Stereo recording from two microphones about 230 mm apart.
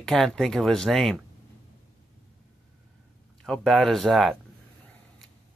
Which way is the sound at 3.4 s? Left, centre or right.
Centre.